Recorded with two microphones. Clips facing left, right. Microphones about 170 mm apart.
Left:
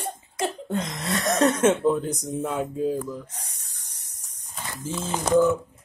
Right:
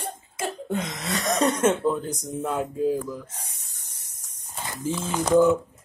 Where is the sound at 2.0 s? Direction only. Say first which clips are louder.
Left 3 dB; 30° left (ahead or behind).